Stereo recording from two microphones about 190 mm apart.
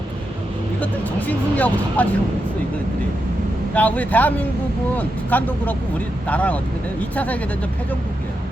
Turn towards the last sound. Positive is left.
turn(degrees=10)  # may be behind; listen again after turning